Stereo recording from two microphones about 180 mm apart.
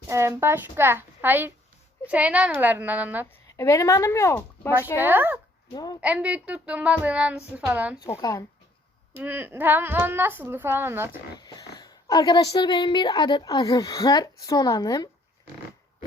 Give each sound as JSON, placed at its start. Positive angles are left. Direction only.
{"t": 0.1, "sound": "speech", "side_deg": -15}
{"t": 3.6, "sound": "speech", "side_deg": 15}
{"t": 4.9, "sound": "speech", "side_deg": -10}
{"t": 5.7, "sound": "a woman's voice", "side_deg": 20}
{"t": 6.0, "sound": "speech", "side_deg": -5}
{"t": 8.1, "sound": "a woman's voice", "side_deg": 20}
{"t": 9.1, "sound": "speech", "side_deg": -10}
{"t": 11.3, "sound": "a sound", "side_deg": 20}
{"t": 11.8, "sound": "a woman's voice", "side_deg": 20}